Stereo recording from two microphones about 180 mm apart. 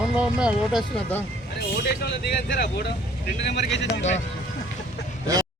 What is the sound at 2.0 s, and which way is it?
Speech, 65° left (ahead or behind).